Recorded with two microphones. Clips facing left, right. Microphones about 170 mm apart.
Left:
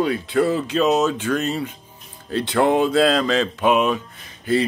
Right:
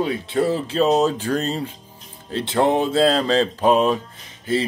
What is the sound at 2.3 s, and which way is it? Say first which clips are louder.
Speech: left 1 dB; 25° right (ahead or behind).